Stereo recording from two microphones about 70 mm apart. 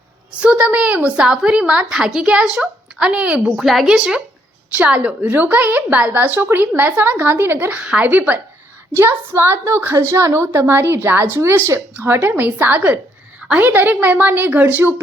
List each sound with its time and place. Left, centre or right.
0.3 s a woman's voice: centre
1.2 s a woman's voice: centre; by 7.7 s right
7.7 s a woman's voice: centre
9.0 s a woman's voice: right